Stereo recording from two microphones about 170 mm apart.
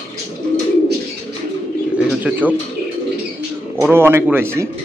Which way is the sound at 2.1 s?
10° right (ahead or behind).